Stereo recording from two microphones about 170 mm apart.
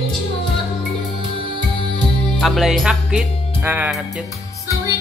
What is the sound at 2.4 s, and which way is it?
Music, centre (ahead or behind).